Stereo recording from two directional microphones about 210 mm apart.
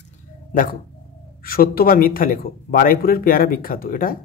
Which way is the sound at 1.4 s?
45° left (ahead or behind).